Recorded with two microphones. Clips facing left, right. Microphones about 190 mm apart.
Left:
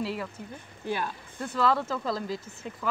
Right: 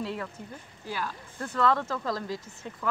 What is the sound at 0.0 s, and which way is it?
Speech, 5° left (ahead or behind).